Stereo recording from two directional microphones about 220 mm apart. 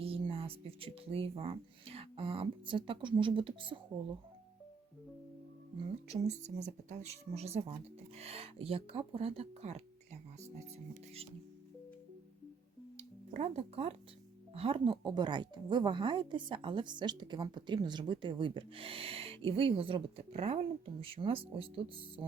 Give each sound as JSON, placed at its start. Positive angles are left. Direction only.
{"t": 0.0, "sound": "speech", "side_deg": -25}
{"t": 6.1, "sound": "speech", "side_deg": -30}
{"t": 13.0, "sound": "speech", "side_deg": -30}